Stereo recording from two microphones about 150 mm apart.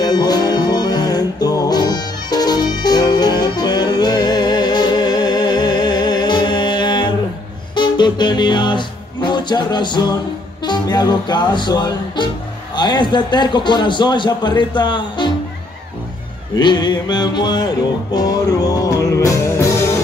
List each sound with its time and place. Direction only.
0.0 s music: 25° left (ahead or behind)
12.7 s a man's voice: 30° left (ahead or behind)
16.5 s music: 30° left (ahead or behind)